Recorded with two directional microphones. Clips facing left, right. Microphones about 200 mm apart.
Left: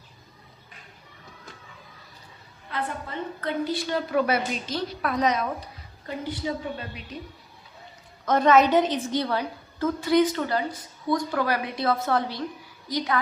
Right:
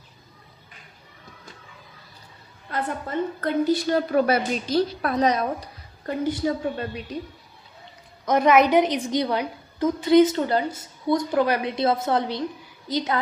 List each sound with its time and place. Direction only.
2.6 s a woman's voice: 45° right (ahead or behind)
6.1 s a woman's voice: 50° right (ahead or behind)
8.2 s a woman's voice: 10° right (ahead or behind)